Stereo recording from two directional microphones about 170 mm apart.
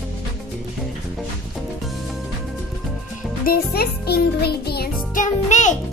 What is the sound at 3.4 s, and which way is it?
Music, 65° left (ahead or behind).